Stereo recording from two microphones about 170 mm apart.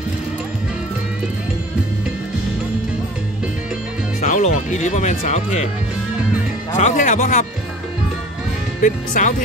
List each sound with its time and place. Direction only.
4.2 s speech: 45° left (ahead or behind)
6.8 s speech: 45° left (ahead or behind)
8.8 s speech: 50° left (ahead or behind)